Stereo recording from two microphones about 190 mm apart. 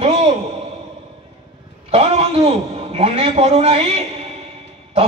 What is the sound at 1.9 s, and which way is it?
A man's voice, 30° right (ahead or behind).